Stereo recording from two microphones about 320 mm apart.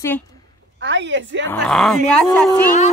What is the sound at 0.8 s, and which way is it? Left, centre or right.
Speech, right.